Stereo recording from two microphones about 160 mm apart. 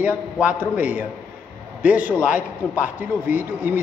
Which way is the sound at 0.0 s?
10° right (ahead or behind).